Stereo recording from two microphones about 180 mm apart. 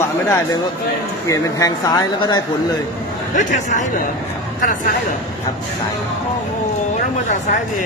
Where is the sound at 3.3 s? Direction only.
45° left (ahead or behind).